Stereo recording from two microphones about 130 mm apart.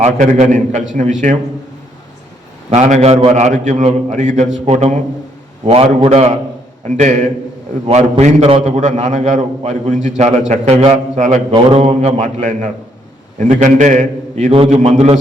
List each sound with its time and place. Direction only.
0.0 s a man's voice: 65° right (ahead or behind)
2.6 s a man's voice: 60° right (ahead or behind)
5.6 s a man's voice: 50° right (ahead or behind)
6.8 s a man's voice: 65° right (ahead or behind)
7.9 s a man's voice: 55° right (ahead or behind)
11.5 s a man's voice: 50° right (ahead or behind); by 14.5 s 70° right (ahead or behind)
14.5 s a man's voice: 50° right (ahead or behind)
14.8 s a man's voice: 60° right (ahead or behind)